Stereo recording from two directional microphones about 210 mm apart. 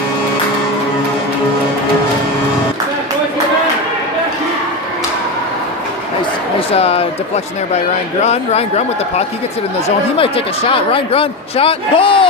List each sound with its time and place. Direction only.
6.7 s speech: 30° left (ahead or behind)
8.2 s speech: 30° left (ahead or behind)
9.8 s speech: 25° left (ahead or behind)